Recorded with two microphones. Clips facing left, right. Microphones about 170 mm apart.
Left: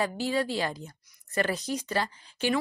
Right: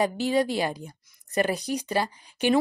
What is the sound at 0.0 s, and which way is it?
A woman's voice, 20° right (ahead or behind).